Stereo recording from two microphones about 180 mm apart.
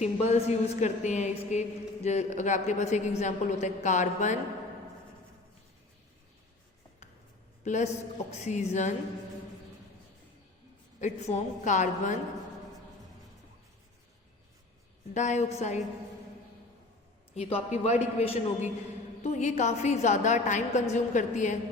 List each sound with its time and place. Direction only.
0.0 s a woman's voice: 35° left (ahead or behind)
7.6 s a woman's voice: 40° left (ahead or behind)
11.0 s a woman's voice: 40° left (ahead or behind)
15.1 s a woman's voice: 40° left (ahead or behind)
17.3 s a woman's voice: 35° left (ahead or behind)